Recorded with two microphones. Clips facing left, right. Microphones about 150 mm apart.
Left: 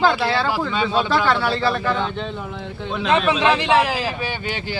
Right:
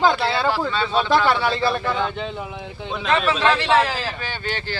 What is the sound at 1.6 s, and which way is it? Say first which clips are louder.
Speech: left 1 dB; 10° right (ahead or behind).